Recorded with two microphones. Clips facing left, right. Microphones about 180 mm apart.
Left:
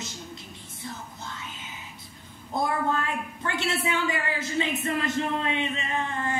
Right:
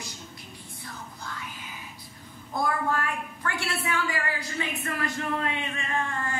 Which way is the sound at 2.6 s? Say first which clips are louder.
Left 1 dB; 25° left (ahead or behind).